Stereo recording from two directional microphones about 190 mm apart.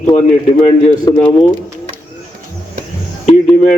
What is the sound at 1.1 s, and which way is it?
Speech, 15° left (ahead or behind).